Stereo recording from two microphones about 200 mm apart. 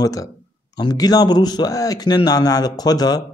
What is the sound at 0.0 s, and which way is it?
Speech, 20° left (ahead or behind).